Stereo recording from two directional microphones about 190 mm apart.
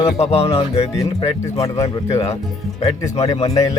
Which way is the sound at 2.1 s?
35° left (ahead or behind).